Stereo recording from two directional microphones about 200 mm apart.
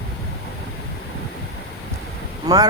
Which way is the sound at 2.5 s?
20° right (ahead or behind).